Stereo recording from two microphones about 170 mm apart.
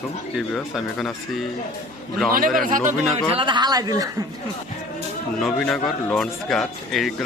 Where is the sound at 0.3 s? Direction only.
Centre (ahead or behind).